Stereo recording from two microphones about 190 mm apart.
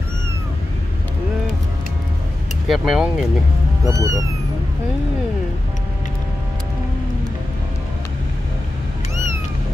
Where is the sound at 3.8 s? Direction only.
15° right (ahead or behind).